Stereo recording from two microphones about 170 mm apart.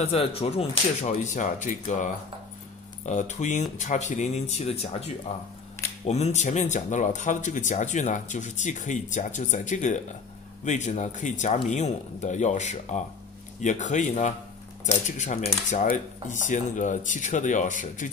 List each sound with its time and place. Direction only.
0.0 s speech: 35° left (ahead or behind)
3.1 s speech: 45° left (ahead or behind)